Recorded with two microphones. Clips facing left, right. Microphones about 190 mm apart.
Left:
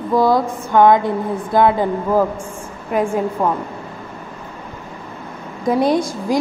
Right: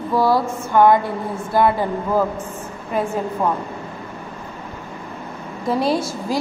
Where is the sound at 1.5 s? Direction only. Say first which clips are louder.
Left 3 dB; 15° left (ahead or behind).